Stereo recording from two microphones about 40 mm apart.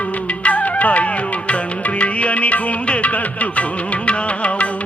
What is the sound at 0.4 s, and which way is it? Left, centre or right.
Music, left.